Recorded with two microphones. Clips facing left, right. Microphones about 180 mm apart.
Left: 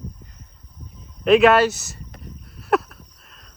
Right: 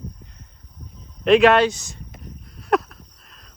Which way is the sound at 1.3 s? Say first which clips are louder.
Even; centre (ahead or behind).